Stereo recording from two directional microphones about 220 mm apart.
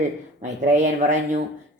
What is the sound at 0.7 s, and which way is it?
Speech, 35° right (ahead or behind).